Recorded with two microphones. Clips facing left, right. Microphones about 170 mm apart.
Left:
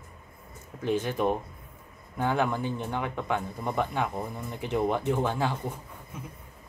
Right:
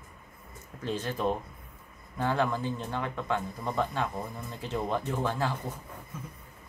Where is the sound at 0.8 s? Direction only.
15° left (ahead or behind).